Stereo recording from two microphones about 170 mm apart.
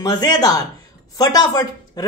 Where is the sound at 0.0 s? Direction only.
25° left (ahead or behind).